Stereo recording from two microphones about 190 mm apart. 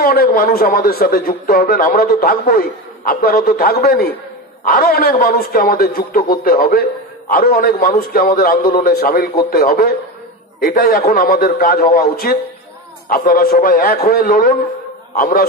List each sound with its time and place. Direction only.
0.0 s a man's voice: 55° left (ahead or behind)